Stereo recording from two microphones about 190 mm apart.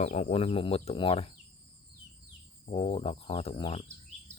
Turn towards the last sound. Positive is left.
turn(degrees=30)  # may be behind; listen again after turning